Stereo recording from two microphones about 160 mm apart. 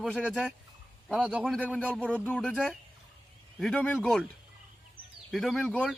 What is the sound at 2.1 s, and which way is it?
Speech, 5° left (ahead or behind).